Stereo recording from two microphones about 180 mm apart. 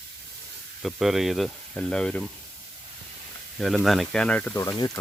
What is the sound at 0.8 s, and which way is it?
Speech, centre (ahead or behind).